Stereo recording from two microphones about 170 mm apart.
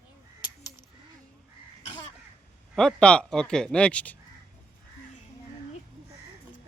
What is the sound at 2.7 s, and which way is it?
A man's voice, centre (ahead or behind).